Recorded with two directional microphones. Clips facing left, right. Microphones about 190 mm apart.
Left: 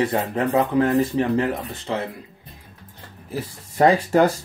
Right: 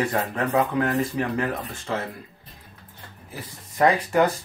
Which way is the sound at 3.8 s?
30° left (ahead or behind).